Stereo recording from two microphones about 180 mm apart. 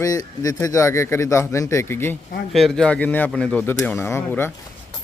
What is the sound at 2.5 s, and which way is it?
A man's voice, 5° left (ahead or behind).